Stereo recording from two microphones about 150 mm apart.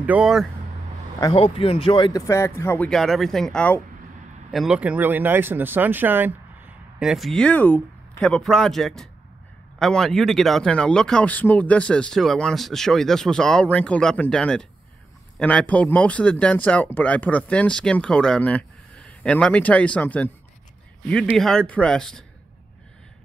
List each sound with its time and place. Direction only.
0.0 s speech: 10° right (ahead or behind)
1.3 s speech: 40° left (ahead or behind)
2.2 s speech: 20° left (ahead or behind)
2.9 s speech: centre (ahead or behind)
4.5 s speech: 5° right (ahead or behind)
7.0 s speech: centre (ahead or behind)
21.3 s speech: centre (ahead or behind)